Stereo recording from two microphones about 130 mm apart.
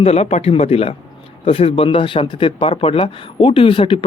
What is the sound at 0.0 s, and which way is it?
Speech, 55° left (ahead or behind).